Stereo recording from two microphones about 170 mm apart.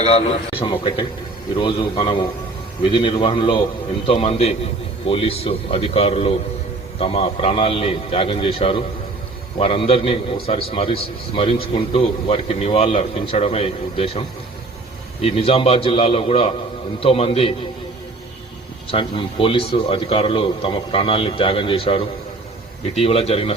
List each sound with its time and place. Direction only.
0.6 s a man's voice: 30° left (ahead or behind)
18.9 s a man's voice: 30° left (ahead or behind)